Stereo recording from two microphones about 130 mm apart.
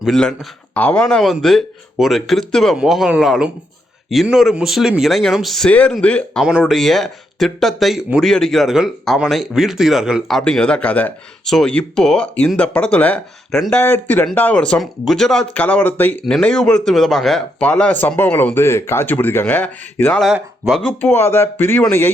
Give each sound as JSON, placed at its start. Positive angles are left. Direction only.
{"t": 0.0, "sound": "speech", "side_deg": 5}
{"t": 6.4, "sound": "speech", "side_deg": -5}
{"t": 13.8, "sound": "speech", "side_deg": 15}
{"t": 20.2, "sound": "speech", "side_deg": 0}
{"t": 21.0, "sound": "speech", "side_deg": 15}